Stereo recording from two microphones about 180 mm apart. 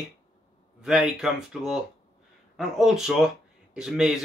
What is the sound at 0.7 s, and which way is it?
Speech, 5° right (ahead or behind).